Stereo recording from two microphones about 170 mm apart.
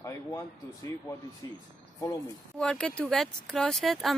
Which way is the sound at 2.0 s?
20° left (ahead or behind).